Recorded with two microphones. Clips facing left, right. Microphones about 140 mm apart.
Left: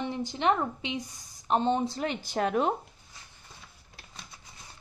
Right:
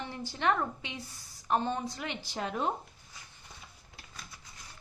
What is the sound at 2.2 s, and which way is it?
Speech, 60° left (ahead or behind).